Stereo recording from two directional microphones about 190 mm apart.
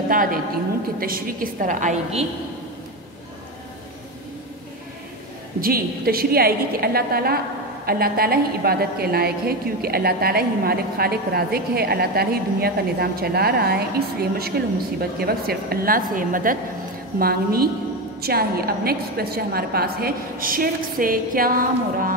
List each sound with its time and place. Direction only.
0.1 s a woman's voice: 45° right (ahead or behind)
5.6 s a woman's voice: 50° right (ahead or behind)